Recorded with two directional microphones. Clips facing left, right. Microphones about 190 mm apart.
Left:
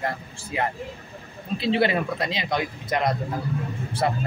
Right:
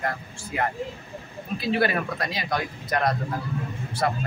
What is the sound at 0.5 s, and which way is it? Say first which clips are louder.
Speech: even; 25° left (ahead or behind).